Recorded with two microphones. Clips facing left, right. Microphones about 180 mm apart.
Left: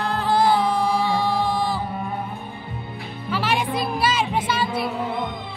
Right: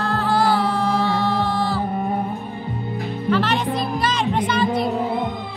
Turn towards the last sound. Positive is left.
turn(degrees=5)  # may be behind; listen again after turning